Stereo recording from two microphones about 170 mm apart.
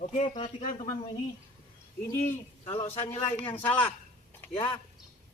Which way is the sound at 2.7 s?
40° left (ahead or behind).